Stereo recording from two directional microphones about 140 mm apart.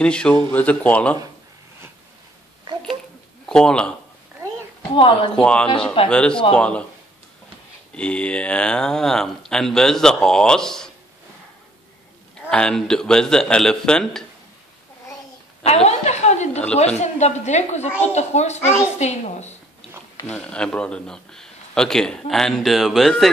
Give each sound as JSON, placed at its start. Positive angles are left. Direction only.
{"t": 0.0, "sound": "speech", "side_deg": 5}
{"t": 3.4, "sound": "speech", "side_deg": 5}
{"t": 4.9, "sound": "speech", "side_deg": 35}
{"t": 5.3, "sound": "speech", "side_deg": 5}
{"t": 7.9, "sound": "a man's voice", "side_deg": 10}
{"t": 12.4, "sound": "a man's voice", "side_deg": 5}
{"t": 15.6, "sound": "a woman's voice", "side_deg": 50}
{"t": 20.2, "sound": "a man's voice", "side_deg": 5}